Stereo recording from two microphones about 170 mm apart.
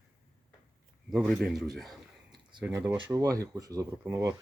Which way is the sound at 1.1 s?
Centre (ahead or behind).